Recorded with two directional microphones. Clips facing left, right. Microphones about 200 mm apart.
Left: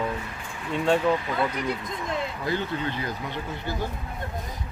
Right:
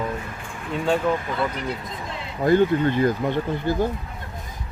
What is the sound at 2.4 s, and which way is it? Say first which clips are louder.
Speech: right 16 dB; 50° right (ahead or behind).